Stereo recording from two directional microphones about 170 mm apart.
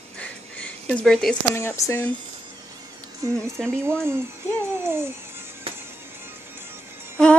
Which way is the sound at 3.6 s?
5° left (ahead or behind).